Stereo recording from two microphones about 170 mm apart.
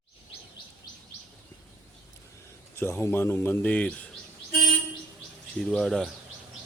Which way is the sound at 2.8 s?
15° left (ahead or behind).